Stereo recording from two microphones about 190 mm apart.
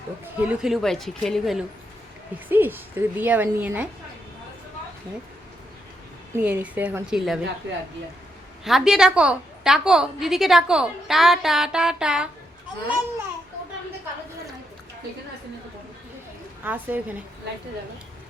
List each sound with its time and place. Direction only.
0.3 s a woman's voice: 5° right (ahead or behind)
2.5 s a woman's voice: 10° right (ahead or behind)
6.3 s a woman's voice: 10° right (ahead or behind)
7.6 s speech: 70° right (ahead or behind)
8.6 s a woman's voice: centre (ahead or behind)
16.6 s a woman's voice: 10° right (ahead or behind)